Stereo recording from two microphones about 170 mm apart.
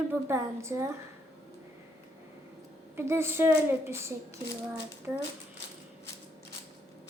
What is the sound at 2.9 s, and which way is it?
A woman's voice, 15° right (ahead or behind).